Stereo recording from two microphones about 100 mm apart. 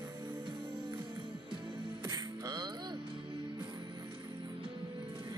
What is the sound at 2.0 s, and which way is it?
Music, 40° right (ahead or behind).